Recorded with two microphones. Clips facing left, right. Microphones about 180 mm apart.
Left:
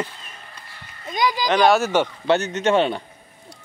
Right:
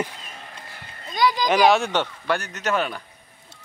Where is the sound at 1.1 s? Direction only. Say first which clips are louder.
Right 1 dB; 15° left (ahead or behind).